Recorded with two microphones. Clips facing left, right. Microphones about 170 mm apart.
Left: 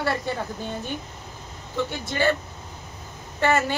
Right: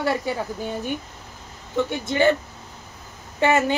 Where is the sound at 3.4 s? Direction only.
15° right (ahead or behind).